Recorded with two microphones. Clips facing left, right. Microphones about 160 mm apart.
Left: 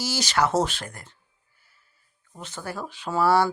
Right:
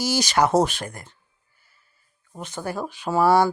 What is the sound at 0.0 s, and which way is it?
Speech, 15° right (ahead or behind).